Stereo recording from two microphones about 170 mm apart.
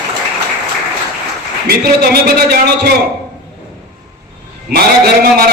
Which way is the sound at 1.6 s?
65° right (ahead or behind).